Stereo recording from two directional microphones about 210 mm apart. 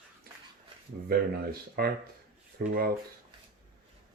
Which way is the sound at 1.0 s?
45° right (ahead or behind).